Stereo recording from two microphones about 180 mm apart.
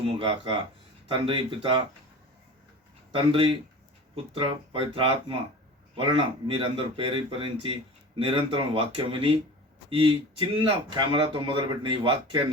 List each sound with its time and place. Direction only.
0.2 s speech: 30° right (ahead or behind)
3.1 s speech: 30° right (ahead or behind)